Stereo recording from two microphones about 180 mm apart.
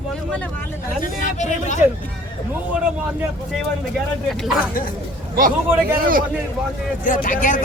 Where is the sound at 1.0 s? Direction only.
40° left (ahead or behind).